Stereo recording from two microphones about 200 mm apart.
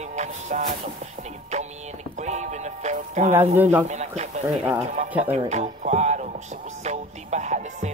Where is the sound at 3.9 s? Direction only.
35° right (ahead or behind).